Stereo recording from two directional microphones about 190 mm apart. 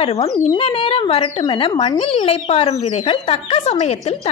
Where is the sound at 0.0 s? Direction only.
30° left (ahead or behind).